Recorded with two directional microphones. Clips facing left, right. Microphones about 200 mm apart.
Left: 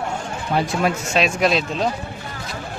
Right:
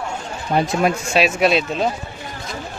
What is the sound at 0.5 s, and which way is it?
Speech, 25° right (ahead or behind).